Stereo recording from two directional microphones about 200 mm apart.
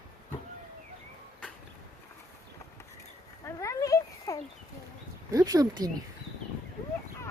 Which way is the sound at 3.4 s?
15° left (ahead or behind).